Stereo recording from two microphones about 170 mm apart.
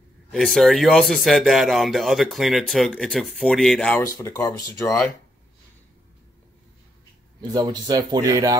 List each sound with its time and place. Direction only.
0.3 s speech: centre (ahead or behind)
4.0 s speech: 20° left (ahead or behind)
7.5 s speech: 25° right (ahead or behind)